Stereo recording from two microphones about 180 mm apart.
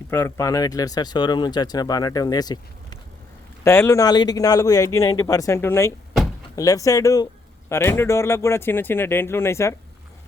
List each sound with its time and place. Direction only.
0.1 s speech: 15° left (ahead or behind)